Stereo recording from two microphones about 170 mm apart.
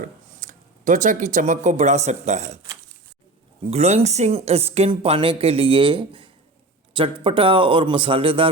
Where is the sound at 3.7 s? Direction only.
40° right (ahead or behind).